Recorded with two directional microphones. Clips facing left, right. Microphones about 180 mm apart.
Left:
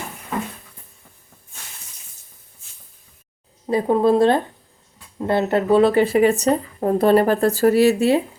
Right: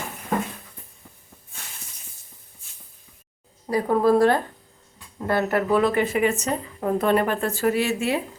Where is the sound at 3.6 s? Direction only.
25° left (ahead or behind).